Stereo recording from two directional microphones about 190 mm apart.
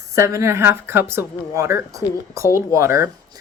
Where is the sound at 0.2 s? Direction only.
15° right (ahead or behind).